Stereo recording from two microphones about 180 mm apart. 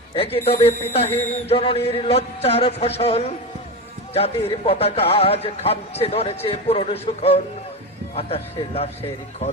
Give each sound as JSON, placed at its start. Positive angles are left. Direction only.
{"t": 0.1, "sound": "speech", "side_deg": 30}